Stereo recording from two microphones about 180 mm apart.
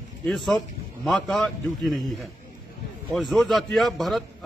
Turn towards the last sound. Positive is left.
turn(degrees=0)  # may be behind; listen again after turning